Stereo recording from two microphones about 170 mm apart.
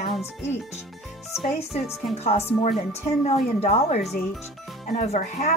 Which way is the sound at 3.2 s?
40° left (ahead or behind).